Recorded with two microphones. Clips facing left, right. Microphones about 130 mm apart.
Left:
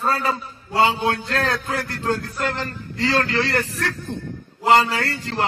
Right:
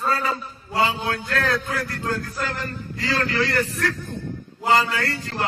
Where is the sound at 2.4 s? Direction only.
75° left (ahead or behind).